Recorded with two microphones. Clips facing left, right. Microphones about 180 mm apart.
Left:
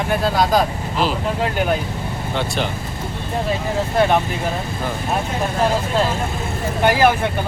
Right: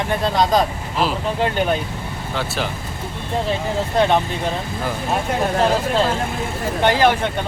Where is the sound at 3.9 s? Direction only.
5° left (ahead or behind).